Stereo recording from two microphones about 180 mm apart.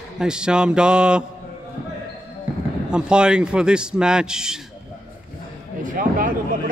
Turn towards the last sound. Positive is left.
turn(degrees=-50)  # may be behind; listen again after turning